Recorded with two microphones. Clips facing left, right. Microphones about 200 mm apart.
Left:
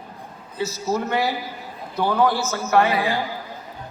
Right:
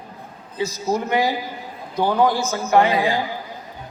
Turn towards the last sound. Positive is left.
turn(degrees=-20)  # may be behind; listen again after turning